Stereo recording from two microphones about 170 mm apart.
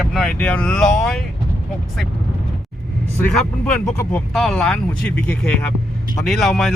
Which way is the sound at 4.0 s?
5° left (ahead or behind).